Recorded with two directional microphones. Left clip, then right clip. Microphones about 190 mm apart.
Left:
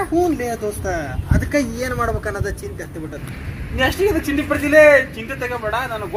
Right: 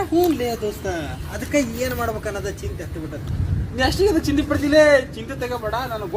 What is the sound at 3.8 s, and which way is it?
A woman's voice, 20° right (ahead or behind).